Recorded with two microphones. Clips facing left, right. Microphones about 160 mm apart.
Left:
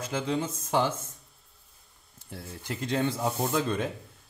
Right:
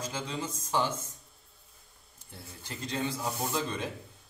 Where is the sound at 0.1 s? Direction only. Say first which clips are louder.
Left 7 dB; 60° left (ahead or behind).